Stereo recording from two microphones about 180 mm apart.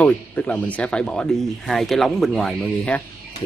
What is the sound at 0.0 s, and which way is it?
Speech, 10° left (ahead or behind).